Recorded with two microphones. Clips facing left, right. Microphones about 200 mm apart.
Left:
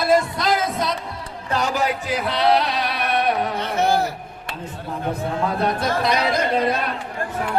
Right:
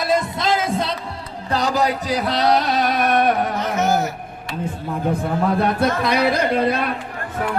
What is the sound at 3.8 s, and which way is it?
Speech, 30° left (ahead or behind).